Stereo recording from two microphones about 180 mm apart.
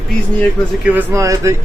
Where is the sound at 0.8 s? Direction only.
15° right (ahead or behind).